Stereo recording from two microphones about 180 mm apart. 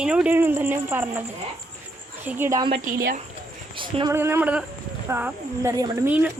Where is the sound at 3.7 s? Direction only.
30° right (ahead or behind).